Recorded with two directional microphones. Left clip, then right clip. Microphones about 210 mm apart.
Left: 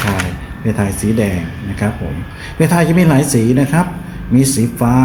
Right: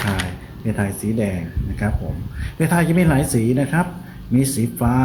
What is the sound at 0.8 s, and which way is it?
Speech, 5° right (ahead or behind).